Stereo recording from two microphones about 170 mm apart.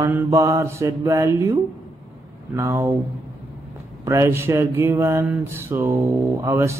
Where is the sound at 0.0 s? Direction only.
20° right (ahead or behind).